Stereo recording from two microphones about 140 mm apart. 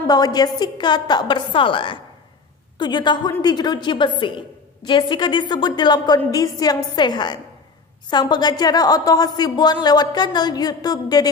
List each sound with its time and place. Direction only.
0.0 s a woman's voice: 30° left (ahead or behind)